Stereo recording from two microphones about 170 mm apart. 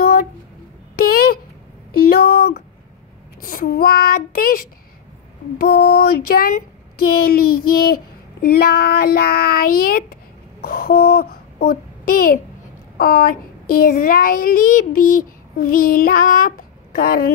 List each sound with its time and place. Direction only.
0.0 s a sound: 60° left (ahead or behind)
3.3 s child singing: 55° left (ahead or behind)
4.3 s a child's voice: 55° left (ahead or behind)